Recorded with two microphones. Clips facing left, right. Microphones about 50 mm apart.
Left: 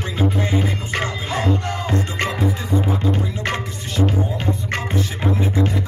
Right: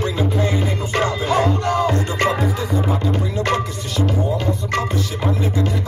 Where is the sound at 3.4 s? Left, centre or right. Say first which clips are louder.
Right 4 dB; left.